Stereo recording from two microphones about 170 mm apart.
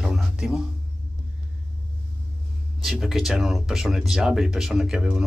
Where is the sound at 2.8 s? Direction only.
Centre (ahead or behind).